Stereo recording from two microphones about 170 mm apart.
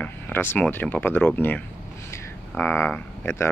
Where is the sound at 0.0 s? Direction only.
10° left (ahead or behind).